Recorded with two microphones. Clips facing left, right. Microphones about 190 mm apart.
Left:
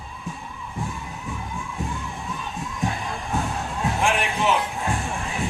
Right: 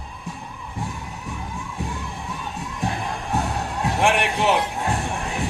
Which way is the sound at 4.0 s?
65° right (ahead or behind).